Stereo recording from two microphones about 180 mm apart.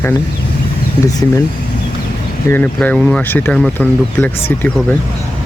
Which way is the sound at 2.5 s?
10° left (ahead or behind).